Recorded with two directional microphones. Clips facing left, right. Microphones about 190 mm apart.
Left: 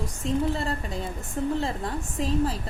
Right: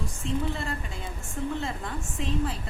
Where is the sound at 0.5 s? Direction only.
35° left (ahead or behind).